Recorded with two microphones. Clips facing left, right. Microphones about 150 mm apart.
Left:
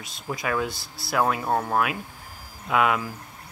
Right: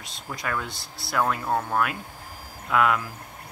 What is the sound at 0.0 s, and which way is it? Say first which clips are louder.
Speech: left 3 dB; 5° left (ahead or behind).